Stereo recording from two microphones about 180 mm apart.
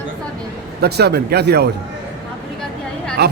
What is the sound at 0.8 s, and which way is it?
Speech, 65° right (ahead or behind).